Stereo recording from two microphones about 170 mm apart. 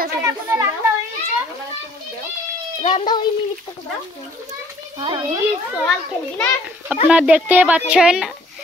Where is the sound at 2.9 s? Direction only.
25° left (ahead or behind).